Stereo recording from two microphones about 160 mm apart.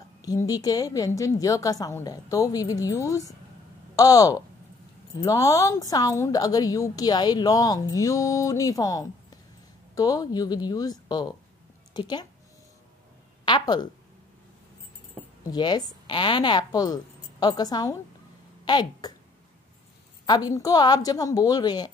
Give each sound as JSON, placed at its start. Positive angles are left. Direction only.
{"t": 0.2, "sound": "a woman's voice", "side_deg": 25}
{"t": 13.5, "sound": "a woman's voice", "side_deg": 30}
{"t": 15.5, "sound": "a woman's voice", "side_deg": 25}
{"t": 20.2, "sound": "a woman's voice", "side_deg": 25}